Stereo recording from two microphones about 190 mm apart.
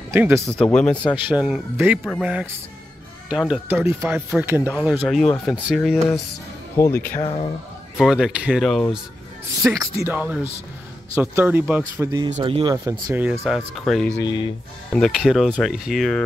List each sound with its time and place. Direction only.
0.1 s speech: 15° right (ahead or behind)
0.5 s speech: 5° left (ahead or behind)
1.2 s speech: 5° right (ahead or behind); by 7.2 s 10° left (ahead or behind)
8.0 s speech: 5° right (ahead or behind)
10.0 s speech: 10° right (ahead or behind); by 12.7 s 25° right (ahead or behind)
12.7 s speech: 10° right (ahead or behind)
13.4 s speech: centre (ahead or behind)
14.2 s speech: 20° left (ahead or behind)
14.9 s speech: centre (ahead or behind)